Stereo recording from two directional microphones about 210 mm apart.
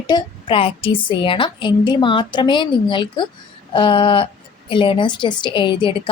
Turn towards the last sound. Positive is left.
turn(degrees=20)  # may be behind; listen again after turning